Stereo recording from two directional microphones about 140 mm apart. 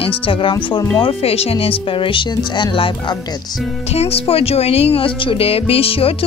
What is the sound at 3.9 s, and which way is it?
Speech, 45° left (ahead or behind).